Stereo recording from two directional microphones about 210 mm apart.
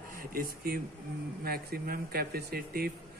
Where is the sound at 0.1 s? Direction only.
45° right (ahead or behind).